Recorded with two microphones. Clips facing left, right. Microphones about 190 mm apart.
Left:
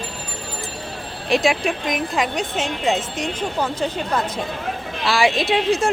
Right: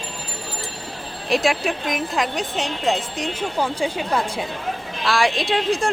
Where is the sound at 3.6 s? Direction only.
10° right (ahead or behind).